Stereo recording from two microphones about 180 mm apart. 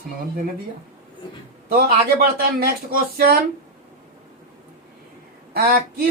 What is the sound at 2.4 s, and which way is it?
Speech, 55° right (ahead or behind).